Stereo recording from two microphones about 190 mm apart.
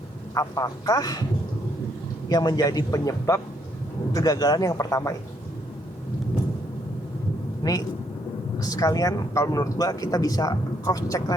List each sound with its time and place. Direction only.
0.3 s speech: 20° left (ahead or behind)
2.3 s speech: 20° left (ahead or behind)
7.6 s speech: 20° left (ahead or behind)